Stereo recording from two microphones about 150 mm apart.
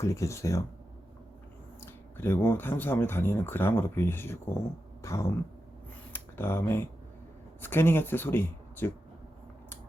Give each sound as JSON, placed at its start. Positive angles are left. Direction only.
{"t": 0.0, "sound": "speech", "side_deg": 20}
{"t": 1.8, "sound": "speech", "side_deg": 15}